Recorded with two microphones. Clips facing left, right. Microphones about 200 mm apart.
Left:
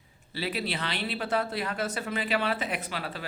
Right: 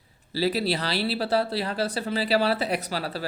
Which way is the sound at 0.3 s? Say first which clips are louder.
Right 7 dB; 35° right (ahead or behind).